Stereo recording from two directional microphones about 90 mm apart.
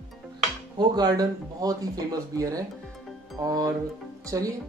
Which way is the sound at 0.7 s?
45° right (ahead or behind).